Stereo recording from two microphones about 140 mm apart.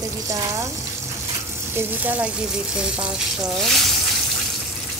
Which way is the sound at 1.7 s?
10° right (ahead or behind).